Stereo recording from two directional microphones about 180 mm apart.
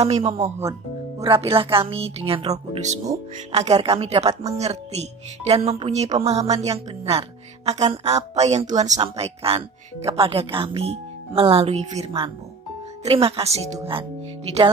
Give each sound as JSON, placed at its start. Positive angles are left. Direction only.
{"t": 0.0, "sound": "speech", "side_deg": -35}